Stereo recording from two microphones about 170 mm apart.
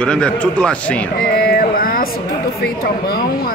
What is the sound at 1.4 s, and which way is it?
Mantra, 60° left (ahead or behind).